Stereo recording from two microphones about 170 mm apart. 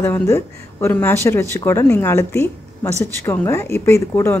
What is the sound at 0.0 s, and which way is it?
Speech, 10° left (ahead or behind).